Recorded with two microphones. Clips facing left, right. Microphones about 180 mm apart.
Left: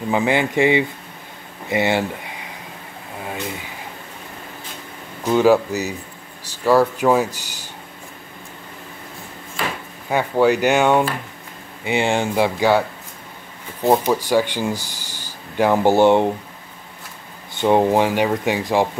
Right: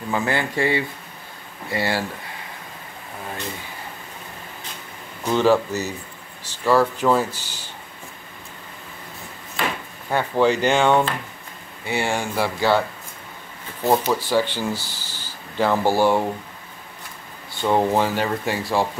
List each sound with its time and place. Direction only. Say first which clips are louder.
0.1 s speech: left 5 dB; 15° left (ahead or behind)
5.2 s speech: left 3 dB; 10° left (ahead or behind)
10.0 s speech: left 2 dB; 10° left (ahead or behind)
11.8 s speech: left 5 dB; 20° left (ahead or behind)
13.8 s speech: left 3 dB; 15° left (ahead or behind)
17.6 s speech: left 4 dB; 15° left (ahead or behind)